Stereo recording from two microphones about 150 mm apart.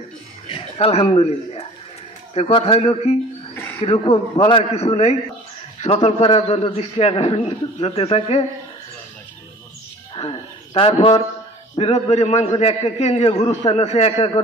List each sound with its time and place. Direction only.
0.5 s a sound: 35° left (ahead or behind)
2.3 s a man's voice: 40° left (ahead or behind)
3.5 s a sound: 15° left (ahead or behind)
4.0 s a man's voice: 35° left (ahead or behind)
10.1 s speech: 35° left (ahead or behind)
11.8 s a man's voice: 50° left (ahead or behind)